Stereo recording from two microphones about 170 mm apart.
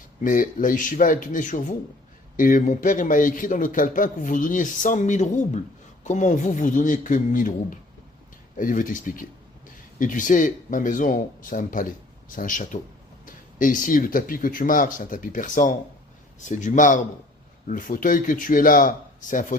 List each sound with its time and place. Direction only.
0.2 s a man's voice: 50° left (ahead or behind)